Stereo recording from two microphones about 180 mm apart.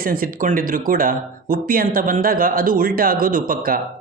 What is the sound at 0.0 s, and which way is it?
A man's voice, 55° right (ahead or behind).